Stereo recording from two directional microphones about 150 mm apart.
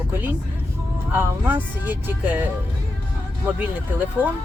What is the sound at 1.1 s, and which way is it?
Speech, 15° right (ahead or behind).